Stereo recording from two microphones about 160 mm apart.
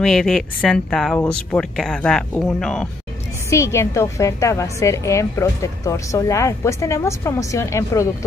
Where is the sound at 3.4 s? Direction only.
20° left (ahead or behind).